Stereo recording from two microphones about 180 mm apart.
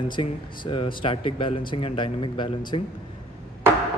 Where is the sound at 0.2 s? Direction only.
30° left (ahead or behind).